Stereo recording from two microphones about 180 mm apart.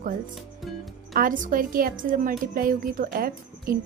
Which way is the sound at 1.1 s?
50° right (ahead or behind).